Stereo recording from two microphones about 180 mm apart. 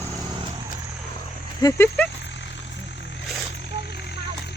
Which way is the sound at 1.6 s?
20° left (ahead or behind).